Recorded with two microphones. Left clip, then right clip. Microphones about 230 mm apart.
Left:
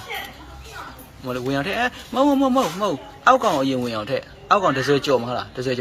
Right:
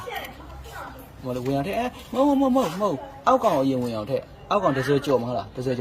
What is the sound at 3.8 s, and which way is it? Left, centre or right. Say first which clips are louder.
Speech: left 3 dB; left.